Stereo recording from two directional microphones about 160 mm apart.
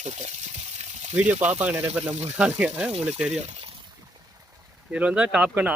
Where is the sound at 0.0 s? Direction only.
45° right (ahead or behind).